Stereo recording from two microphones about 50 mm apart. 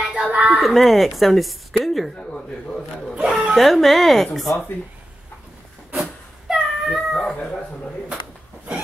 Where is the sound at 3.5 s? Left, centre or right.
Centre.